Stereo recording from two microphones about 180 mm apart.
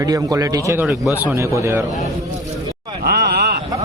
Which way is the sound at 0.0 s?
20° right (ahead or behind).